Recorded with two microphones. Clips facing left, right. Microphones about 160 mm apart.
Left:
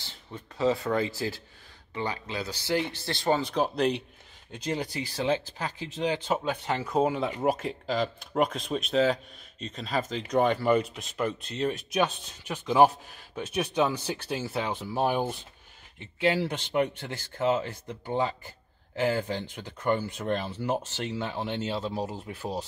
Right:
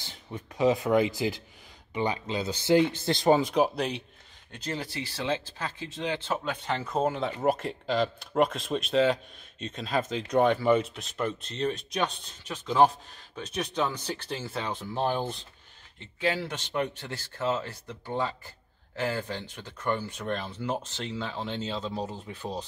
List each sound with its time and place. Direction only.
0.0 s speech: 15° right (ahead or behind)
4.5 s speech: 15° left (ahead or behind)